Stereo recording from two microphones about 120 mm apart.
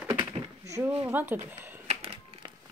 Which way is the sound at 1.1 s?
20° right (ahead or behind).